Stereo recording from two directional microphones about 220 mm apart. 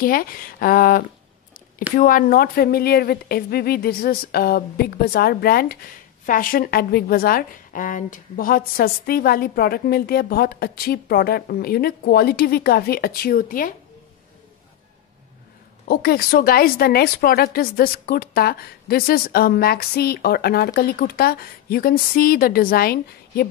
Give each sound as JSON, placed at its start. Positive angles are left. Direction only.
{"t": 0.0, "sound": "a woman's voice", "side_deg": 40}
{"t": 15.9, "sound": "a woman's voice", "side_deg": 45}